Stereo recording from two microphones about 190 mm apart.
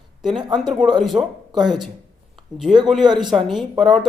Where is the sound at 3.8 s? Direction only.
Centre (ahead or behind).